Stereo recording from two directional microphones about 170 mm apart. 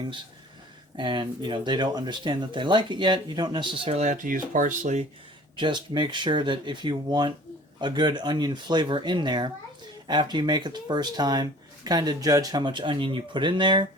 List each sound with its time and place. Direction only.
0.9 s speech: 25° right (ahead or behind); by 5.0 s 45° right (ahead or behind)
5.5 s speech: 25° right (ahead or behind)